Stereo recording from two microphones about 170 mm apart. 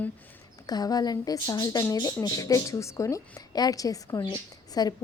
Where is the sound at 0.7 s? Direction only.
20° left (ahead or behind).